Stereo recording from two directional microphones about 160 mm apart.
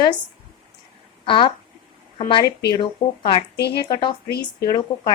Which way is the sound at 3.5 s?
90° left.